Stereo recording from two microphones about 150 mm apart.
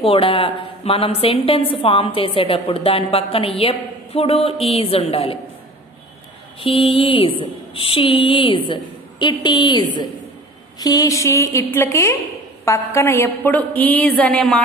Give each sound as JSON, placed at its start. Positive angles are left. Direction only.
{"t": 0.0, "sound": "a woman's voice", "side_deg": 35}
{"t": 6.6, "sound": "a woman's voice", "side_deg": 35}